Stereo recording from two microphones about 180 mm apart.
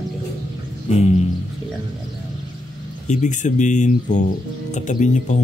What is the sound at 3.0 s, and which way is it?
Speech, 40° left (ahead or behind).